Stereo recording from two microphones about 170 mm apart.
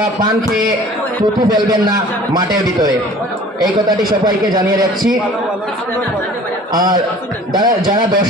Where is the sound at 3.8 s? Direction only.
25° right (ahead or behind).